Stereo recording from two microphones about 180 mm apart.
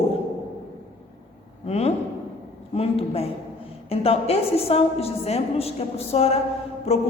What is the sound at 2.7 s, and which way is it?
A woman's voice, 35° left (ahead or behind).